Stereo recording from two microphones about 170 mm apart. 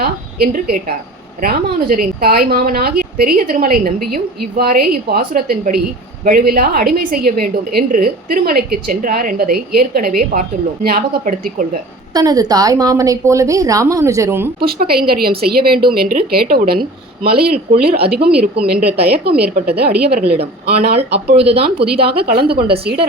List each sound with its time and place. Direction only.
0.0 s a woman's voice: 60° right (ahead or behind)
12.1 s a woman's voice: 20° right (ahead or behind)
14.6 s a woman's voice: 65° right (ahead or behind)
21.3 s speech: 35° right (ahead or behind)
22.0 s a woman's voice: 70° right (ahead or behind)